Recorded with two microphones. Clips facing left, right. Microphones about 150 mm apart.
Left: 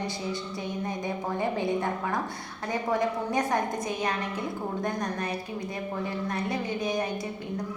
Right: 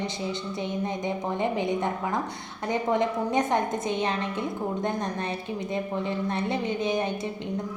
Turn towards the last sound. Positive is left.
turn(degrees=-25)  # may be behind; listen again after turning